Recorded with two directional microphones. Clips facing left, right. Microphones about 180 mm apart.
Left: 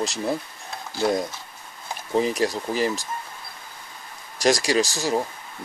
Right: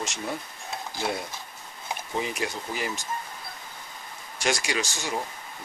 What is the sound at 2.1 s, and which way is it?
Speech, 35° left (ahead or behind).